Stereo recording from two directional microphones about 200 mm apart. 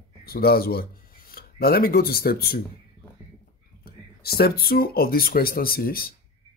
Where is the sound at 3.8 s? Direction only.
50° left (ahead or behind).